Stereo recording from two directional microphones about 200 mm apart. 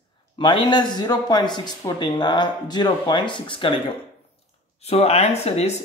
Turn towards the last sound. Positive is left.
turn(degrees=30)  # may be behind; listen again after turning